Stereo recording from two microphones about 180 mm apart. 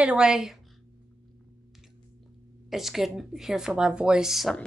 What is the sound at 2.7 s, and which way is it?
A woman's voice, centre (ahead or behind).